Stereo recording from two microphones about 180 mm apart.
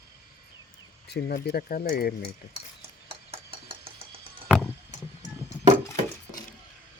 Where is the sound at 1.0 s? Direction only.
60° left (ahead or behind).